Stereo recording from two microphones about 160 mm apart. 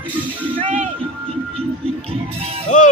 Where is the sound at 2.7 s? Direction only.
50° left (ahead or behind).